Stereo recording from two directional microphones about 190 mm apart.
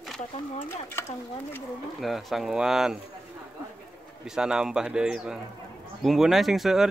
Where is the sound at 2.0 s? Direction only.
Centre (ahead or behind).